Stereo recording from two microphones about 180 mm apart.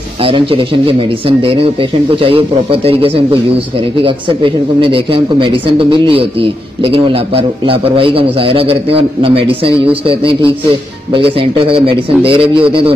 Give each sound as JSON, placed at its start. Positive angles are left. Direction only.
{"t": 0.2, "sound": "a man's voice", "side_deg": -30}